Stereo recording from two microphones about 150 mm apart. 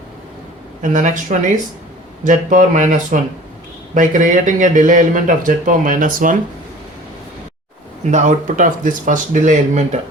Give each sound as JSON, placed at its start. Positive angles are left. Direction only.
{"t": 0.8, "sound": "speech", "side_deg": -55}
{"t": 8.0, "sound": "speech", "side_deg": -55}